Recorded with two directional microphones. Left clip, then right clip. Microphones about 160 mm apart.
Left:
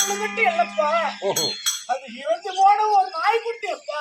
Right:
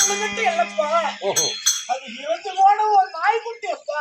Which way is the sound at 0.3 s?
15° right (ahead or behind).